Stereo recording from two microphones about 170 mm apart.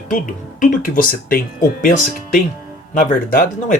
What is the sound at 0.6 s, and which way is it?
Speech, 55° left (ahead or behind).